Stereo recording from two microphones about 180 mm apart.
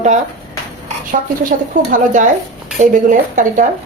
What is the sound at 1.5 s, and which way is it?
Speech, 45° right (ahead or behind).